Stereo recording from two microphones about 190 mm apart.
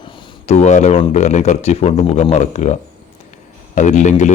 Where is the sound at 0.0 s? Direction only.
35° left (ahead or behind).